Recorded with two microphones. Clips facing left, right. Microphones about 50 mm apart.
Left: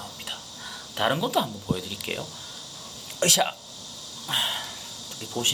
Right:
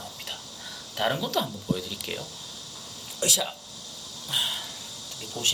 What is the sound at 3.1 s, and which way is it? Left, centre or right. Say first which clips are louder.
Speech: left 5 dB; left.